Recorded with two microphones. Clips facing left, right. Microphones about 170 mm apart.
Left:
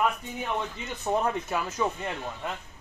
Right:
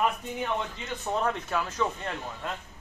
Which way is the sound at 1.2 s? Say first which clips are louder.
Even; 10° left (ahead or behind).